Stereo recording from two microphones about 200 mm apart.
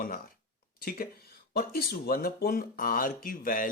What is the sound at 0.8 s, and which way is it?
Speech, 50° left (ahead or behind).